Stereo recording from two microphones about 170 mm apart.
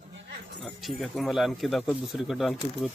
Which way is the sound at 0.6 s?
Centre (ahead or behind).